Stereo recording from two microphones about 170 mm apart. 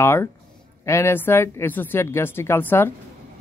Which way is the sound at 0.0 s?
15° left (ahead or behind).